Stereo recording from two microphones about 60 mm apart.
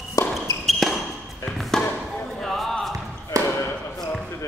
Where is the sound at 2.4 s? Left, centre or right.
Centre.